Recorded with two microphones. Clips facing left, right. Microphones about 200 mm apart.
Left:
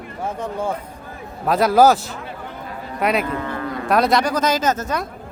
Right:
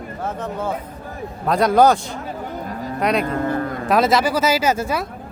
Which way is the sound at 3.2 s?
45° right (ahead or behind).